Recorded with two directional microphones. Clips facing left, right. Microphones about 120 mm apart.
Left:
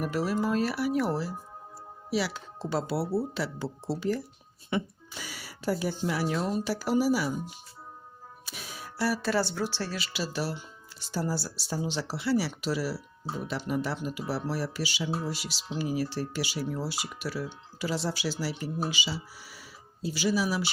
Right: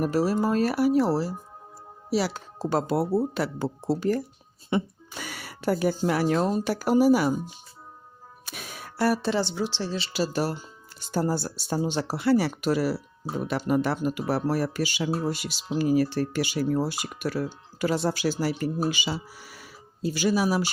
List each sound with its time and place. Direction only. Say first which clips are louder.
0.0 s speech: right 5 dB; 40° right (ahead or behind)
4.7 s speech: right 4 dB; 30° right (ahead or behind)
5.1 s speech: right 5 dB; 60° right (ahead or behind)
8.4 s a sound: right 3 dB; 55° right (ahead or behind)
9.2 s speech: right 2 dB; 15° right (ahead or behind)
10.1 s speech: right 6 dB; 45° right (ahead or behind)